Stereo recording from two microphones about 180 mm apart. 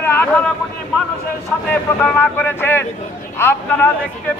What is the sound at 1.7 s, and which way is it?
Speech, 10° left (ahead or behind).